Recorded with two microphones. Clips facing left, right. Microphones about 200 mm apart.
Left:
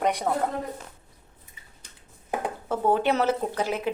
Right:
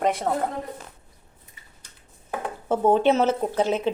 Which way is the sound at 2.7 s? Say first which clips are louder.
Right 5 dB; 25° right (ahead or behind).